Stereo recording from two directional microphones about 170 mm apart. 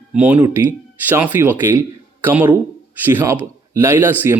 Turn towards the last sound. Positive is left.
turn(degrees=-15)  # may be behind; listen again after turning